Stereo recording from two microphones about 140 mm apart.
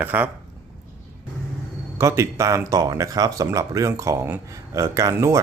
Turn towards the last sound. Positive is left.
turn(degrees=-20)  # may be behind; listen again after turning